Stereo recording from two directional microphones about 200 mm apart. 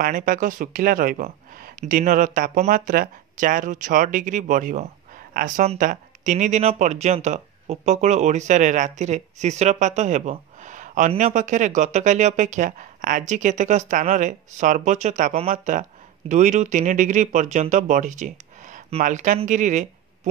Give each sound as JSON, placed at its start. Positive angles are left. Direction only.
{"t": 0.0, "sound": "speech", "side_deg": -45}